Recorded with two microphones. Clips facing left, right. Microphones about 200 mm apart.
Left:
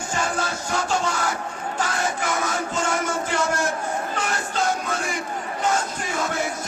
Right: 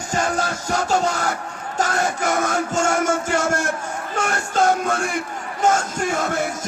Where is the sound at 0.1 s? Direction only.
40° right (ahead or behind).